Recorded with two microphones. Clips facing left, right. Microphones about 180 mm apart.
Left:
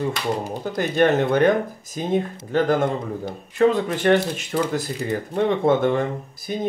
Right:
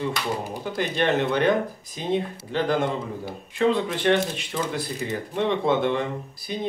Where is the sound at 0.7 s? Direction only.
45° left (ahead or behind).